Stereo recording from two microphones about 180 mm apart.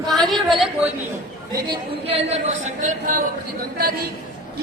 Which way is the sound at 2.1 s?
35° right (ahead or behind).